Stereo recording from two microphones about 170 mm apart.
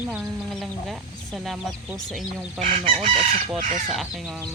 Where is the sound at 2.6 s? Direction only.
50° right (ahead or behind).